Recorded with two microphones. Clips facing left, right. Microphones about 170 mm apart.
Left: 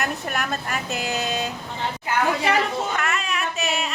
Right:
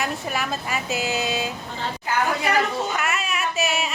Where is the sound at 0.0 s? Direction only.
Centre (ahead or behind).